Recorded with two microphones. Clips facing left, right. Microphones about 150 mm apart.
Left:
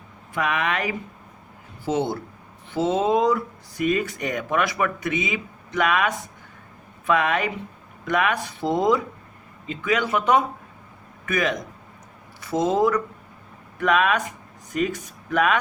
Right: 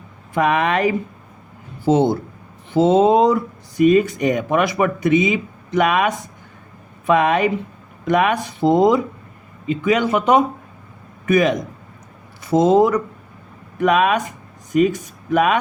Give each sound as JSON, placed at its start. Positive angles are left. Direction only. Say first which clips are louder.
{"t": 0.3, "sound": "speech", "louder": "right 7 dB", "side_deg": -30}